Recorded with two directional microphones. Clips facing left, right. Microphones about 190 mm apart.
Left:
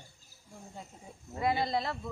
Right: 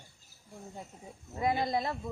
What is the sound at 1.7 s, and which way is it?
Speech, 20° right (ahead or behind).